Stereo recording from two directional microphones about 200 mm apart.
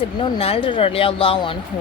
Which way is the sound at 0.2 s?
30° left (ahead or behind).